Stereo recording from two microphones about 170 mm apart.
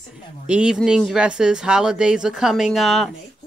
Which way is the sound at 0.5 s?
5° right (ahead or behind).